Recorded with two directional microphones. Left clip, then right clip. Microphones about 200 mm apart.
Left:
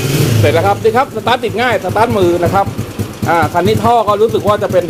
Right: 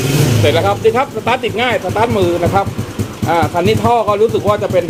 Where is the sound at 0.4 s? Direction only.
10° left (ahead or behind).